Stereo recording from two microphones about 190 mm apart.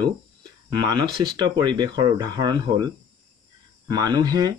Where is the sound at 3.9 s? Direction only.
20° right (ahead or behind).